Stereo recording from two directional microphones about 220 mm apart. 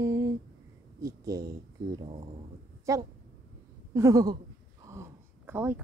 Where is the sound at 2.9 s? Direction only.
15° right (ahead or behind).